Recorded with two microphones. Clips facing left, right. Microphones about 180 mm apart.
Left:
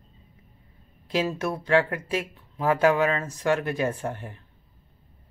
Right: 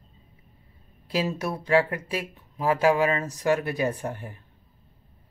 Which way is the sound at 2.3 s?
10° right (ahead or behind).